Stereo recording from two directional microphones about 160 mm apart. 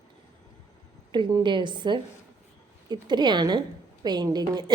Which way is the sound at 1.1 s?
25° right (ahead or behind).